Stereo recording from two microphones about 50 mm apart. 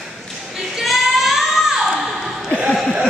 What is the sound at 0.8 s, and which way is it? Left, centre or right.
Child singing, centre.